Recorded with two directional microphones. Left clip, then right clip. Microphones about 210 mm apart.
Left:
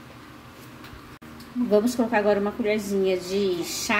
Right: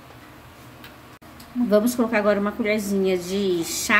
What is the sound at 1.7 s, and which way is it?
A woman's voice, 20° right (ahead or behind).